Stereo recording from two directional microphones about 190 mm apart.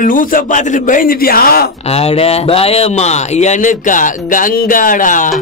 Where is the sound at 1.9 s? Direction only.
30° left (ahead or behind).